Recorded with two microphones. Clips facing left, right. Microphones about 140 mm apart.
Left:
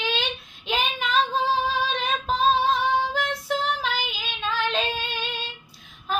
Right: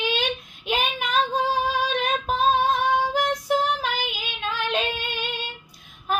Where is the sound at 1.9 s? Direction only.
15° right (ahead or behind).